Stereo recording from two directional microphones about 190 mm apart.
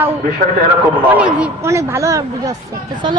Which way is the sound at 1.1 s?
10° right (ahead or behind).